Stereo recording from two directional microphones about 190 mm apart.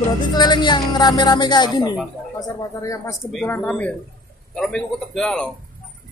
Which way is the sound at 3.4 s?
10° left (ahead or behind).